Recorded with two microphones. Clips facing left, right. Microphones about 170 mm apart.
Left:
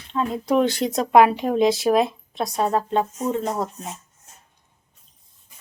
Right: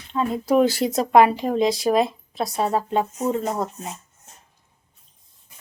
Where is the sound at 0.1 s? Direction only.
5° right (ahead or behind).